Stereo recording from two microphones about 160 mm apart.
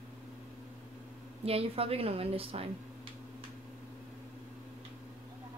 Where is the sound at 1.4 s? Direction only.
40° right (ahead or behind).